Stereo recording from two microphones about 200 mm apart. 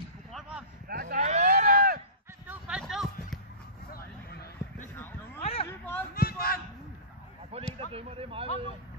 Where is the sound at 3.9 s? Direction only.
50° left (ahead or behind).